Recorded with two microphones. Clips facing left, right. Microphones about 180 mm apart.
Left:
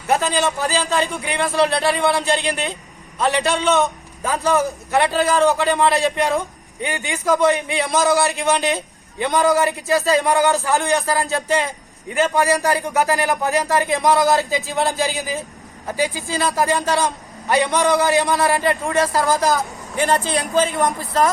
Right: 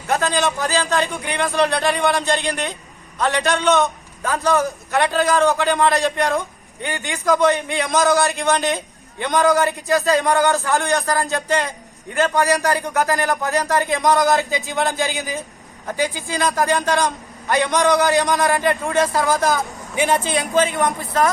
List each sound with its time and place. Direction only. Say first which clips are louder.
0.1 s a man's voice: left 1 dB; 10° left (ahead or behind)